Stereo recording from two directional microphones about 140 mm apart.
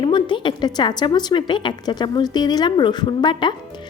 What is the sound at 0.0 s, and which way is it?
A woman's voice, 35° left (ahead or behind).